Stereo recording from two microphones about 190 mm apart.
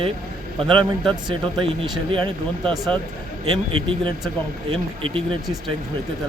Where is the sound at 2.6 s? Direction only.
Centre (ahead or behind).